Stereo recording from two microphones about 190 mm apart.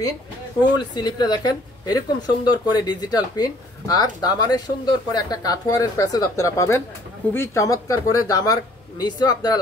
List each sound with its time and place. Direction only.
0.7 s a woman's voice: 20° left (ahead or behind)